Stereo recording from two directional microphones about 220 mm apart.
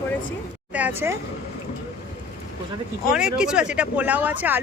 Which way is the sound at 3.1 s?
5° right (ahead or behind).